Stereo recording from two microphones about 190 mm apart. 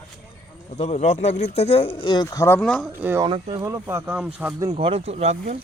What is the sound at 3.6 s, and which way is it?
Speech, 15° right (ahead or behind).